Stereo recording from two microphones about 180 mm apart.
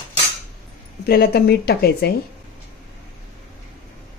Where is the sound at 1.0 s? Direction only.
60° left (ahead or behind).